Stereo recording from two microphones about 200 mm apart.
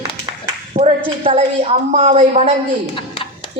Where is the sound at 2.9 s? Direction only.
25° left (ahead or behind).